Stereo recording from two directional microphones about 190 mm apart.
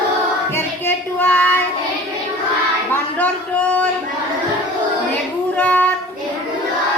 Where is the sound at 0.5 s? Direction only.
10° left (ahead or behind).